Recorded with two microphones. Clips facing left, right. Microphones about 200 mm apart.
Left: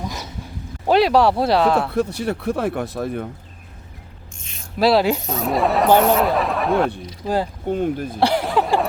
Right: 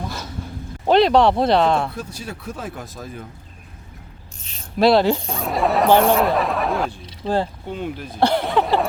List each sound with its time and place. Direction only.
0.0 s dog: 15° left (ahead or behind)
0.9 s speech: 5° left (ahead or behind)
1.9 s speech: 65° left (ahead or behind)
4.8 s speech: 5° left (ahead or behind)
7.7 s speech: 45° left (ahead or behind)
8.2 s speech: 5° left (ahead or behind)